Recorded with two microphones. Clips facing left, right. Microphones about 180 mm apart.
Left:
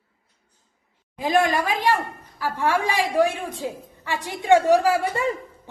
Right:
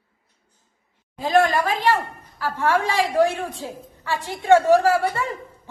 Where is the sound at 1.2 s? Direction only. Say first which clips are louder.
Right 2 dB; 15° left (ahead or behind).